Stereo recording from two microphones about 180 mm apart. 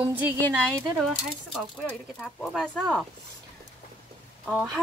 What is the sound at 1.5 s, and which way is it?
Speech, 5° left (ahead or behind).